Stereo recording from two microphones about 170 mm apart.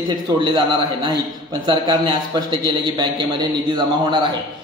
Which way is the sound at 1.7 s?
30° right (ahead or behind).